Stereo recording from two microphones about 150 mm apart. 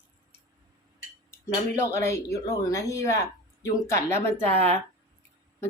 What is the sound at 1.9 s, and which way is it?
Speech, 20° left (ahead or behind).